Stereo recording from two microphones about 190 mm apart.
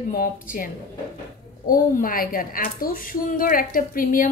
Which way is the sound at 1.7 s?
50° left (ahead or behind).